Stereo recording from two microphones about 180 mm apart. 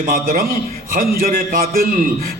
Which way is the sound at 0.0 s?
50° right (ahead or behind).